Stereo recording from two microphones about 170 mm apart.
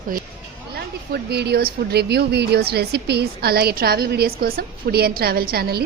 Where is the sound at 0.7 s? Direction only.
75° right (ahead or behind).